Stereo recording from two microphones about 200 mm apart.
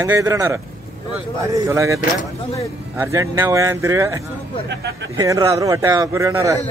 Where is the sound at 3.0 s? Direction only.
15° right (ahead or behind).